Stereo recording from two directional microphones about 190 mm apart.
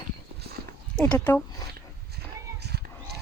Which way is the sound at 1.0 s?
15° left (ahead or behind).